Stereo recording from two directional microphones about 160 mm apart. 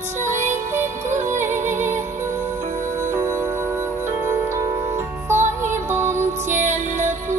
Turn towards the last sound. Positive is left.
turn(degrees=-15)  # may be behind; listen again after turning